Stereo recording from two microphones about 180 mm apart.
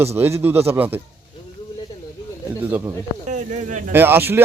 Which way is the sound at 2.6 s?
10° right (ahead or behind).